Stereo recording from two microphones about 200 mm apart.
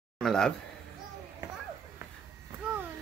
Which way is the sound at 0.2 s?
Centre (ahead or behind).